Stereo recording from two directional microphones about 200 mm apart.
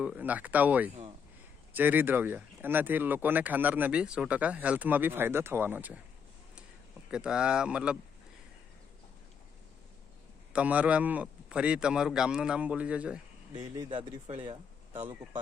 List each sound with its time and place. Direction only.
0.0 s speech: 5° right (ahead or behind)
7.1 s a man's voice: 5° right (ahead or behind)
10.5 s a man's voice: 5° right (ahead or behind)
13.7 s speech: 20° right (ahead or behind)